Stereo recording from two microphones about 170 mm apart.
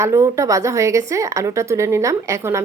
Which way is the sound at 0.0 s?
15° right (ahead or behind).